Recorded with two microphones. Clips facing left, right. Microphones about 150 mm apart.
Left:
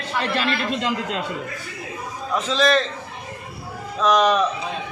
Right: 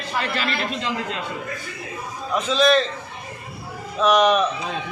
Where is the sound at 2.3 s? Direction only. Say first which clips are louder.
Right 1 dB; centre (ahead or behind).